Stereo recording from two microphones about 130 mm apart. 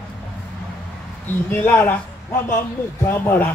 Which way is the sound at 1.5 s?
15° left (ahead or behind).